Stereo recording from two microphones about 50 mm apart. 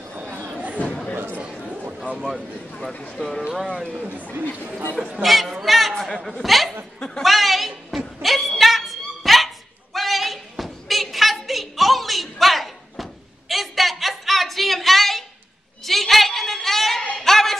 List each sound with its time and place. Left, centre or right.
0.4 s chatter: right
1.1 s chatter: right
2.9 s speech: left
3.2 s speech: centre
3.7 s speech: centre
4.2 s speech: left
5.1 s a man's voice: centre
7.2 s a sound: centre
17.1 s music: centre